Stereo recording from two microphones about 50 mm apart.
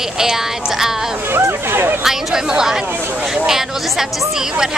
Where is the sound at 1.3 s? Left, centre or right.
Right.